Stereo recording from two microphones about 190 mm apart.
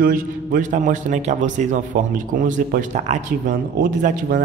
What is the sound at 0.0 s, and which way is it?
A man's voice, 50° right (ahead or behind).